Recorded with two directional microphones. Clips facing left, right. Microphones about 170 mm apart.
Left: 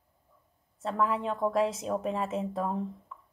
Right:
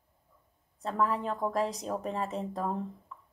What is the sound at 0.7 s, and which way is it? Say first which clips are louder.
A woman's voice: left 1 dB; centre (ahead or behind).